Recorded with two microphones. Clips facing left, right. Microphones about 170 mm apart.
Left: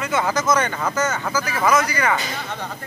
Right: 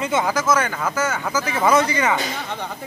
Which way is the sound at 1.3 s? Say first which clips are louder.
Right 2 dB; 25° right (ahead or behind).